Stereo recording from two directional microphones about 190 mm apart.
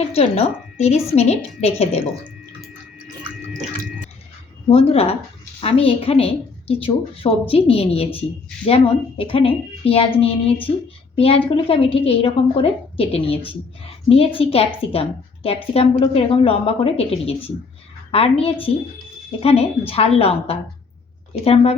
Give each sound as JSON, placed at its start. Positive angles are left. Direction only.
{"t": 0.1, "sound": "a woman's voice", "side_deg": 30}
{"t": 4.7, "sound": "a woman's voice", "side_deg": 30}